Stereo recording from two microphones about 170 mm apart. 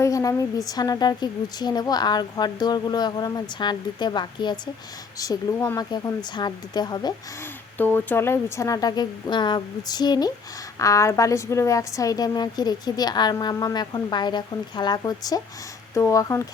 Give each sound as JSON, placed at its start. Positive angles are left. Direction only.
{"t": 0.0, "sound": "a woman's voice", "side_deg": 20}
{"t": 5.2, "sound": "a woman's voice", "side_deg": 15}
{"t": 7.8, "sound": "a woman's voice", "side_deg": 10}